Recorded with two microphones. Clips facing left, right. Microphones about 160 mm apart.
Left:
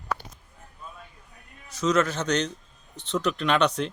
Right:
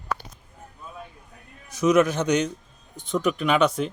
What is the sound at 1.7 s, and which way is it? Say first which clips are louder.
Speech: right 5 dB; 15° right (ahead or behind).